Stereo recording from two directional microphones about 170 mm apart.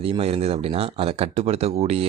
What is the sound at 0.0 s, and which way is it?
Speech, 35° right (ahead or behind).